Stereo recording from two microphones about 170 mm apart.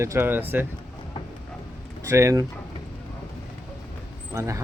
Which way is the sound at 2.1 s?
15° right (ahead or behind).